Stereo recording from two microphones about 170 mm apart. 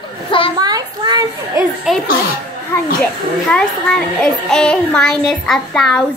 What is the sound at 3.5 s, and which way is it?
A child's voice, 5° left (ahead or behind).